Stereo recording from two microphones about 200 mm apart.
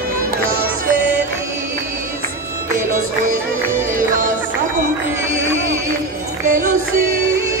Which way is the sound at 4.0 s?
45° right (ahead or behind).